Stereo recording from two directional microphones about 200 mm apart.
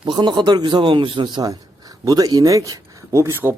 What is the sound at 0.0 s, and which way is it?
A man's voice, 20° right (ahead or behind).